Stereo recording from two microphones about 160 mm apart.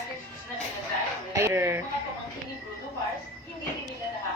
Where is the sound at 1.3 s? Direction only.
15° right (ahead or behind).